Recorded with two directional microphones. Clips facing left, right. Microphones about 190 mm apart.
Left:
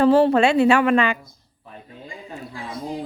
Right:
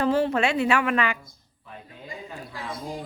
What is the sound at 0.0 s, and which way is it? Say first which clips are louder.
Speech: left 7 dB; 35° left (ahead or behind).